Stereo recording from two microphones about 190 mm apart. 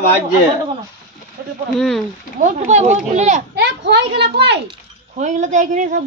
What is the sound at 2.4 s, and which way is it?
A woman's voice, 40° right (ahead or behind).